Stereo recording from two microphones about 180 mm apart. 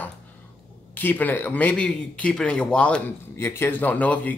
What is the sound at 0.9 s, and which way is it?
Speech, 10° left (ahead or behind).